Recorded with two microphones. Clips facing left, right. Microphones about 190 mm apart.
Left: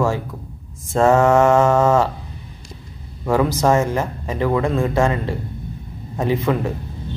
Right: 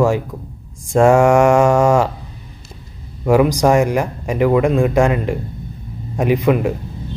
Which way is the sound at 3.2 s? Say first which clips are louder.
Right 5 dB; 15° right (ahead or behind).